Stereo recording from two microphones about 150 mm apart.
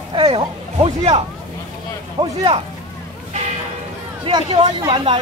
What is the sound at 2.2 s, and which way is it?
Speech, 35° right (ahead or behind).